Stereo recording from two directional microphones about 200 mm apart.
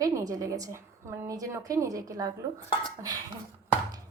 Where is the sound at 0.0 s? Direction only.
15° right (ahead or behind).